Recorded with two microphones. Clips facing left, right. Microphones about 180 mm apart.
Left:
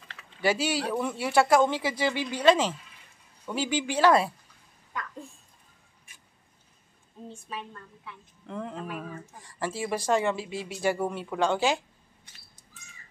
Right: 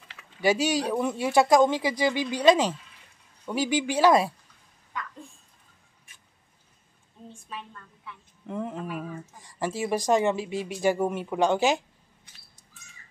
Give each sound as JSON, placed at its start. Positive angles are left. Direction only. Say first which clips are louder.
{"t": 0.1, "sound": "speech", "louder": "right 3 dB", "side_deg": -15}
{"t": 8.5, "sound": "speech", "louder": "right 3 dB", "side_deg": -15}
{"t": 8.8, "sound": "speech", "louder": "right 2 dB", "side_deg": -5}
{"t": 9.5, "sound": "speech", "louder": "right 3 dB", "side_deg": -15}